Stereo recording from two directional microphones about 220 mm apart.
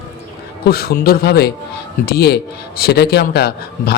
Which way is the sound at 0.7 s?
45° left (ahead or behind).